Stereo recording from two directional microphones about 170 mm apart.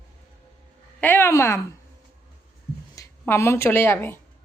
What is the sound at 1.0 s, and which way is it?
Speech, 10° left (ahead or behind).